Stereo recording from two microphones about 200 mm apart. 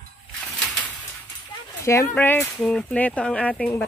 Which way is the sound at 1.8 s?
15° left (ahead or behind).